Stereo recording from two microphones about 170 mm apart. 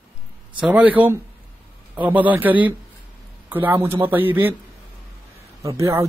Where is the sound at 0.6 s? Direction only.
5° right (ahead or behind).